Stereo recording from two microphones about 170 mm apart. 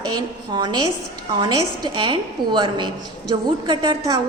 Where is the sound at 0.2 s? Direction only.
25° right (ahead or behind).